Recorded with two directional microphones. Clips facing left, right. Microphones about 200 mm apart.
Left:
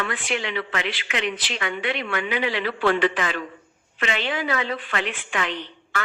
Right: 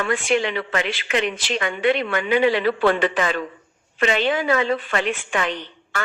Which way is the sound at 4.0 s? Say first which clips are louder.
Right 6 dB; 45° right (ahead or behind).